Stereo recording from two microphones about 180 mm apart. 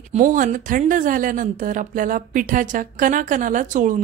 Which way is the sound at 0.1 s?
45° right (ahead or behind).